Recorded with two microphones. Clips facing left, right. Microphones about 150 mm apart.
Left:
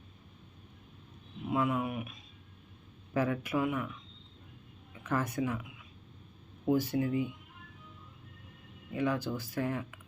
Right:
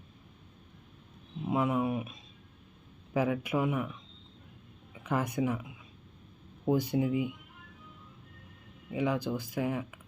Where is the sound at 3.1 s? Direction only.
10° right (ahead or behind).